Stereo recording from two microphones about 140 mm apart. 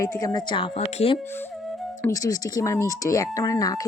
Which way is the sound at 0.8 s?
50° left (ahead or behind).